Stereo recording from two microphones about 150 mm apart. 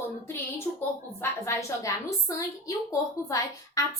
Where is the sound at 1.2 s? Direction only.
20° left (ahead or behind).